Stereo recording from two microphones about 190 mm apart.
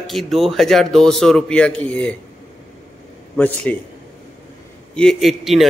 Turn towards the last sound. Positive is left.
turn(degrees=0)  # may be behind; listen again after turning